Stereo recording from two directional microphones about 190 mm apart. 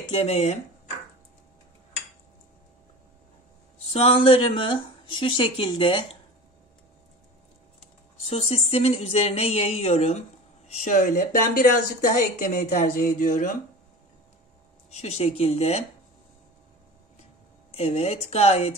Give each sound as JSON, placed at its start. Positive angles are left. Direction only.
{"t": 0.1, "sound": "speech", "side_deg": 35}
{"t": 3.8, "sound": "speech", "side_deg": 30}
{"t": 8.2, "sound": "speech", "side_deg": 30}
{"t": 15.0, "sound": "speech", "side_deg": 35}
{"t": 17.7, "sound": "speech", "side_deg": 35}